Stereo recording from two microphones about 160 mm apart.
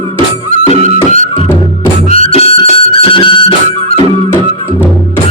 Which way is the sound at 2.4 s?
35° left (ahead or behind).